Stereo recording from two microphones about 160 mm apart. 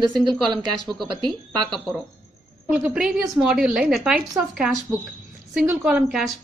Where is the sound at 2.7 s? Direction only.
5° right (ahead or behind).